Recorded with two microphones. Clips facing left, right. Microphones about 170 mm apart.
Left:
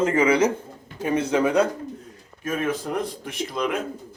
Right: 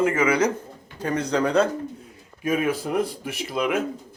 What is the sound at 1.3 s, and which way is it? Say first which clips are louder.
Speech: left 1 dB; 15° left (ahead or behind).